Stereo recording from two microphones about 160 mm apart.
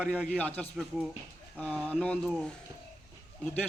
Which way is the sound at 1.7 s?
5° left (ahead or behind).